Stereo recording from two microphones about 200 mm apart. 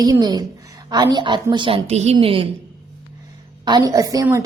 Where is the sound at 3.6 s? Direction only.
20° right (ahead or behind).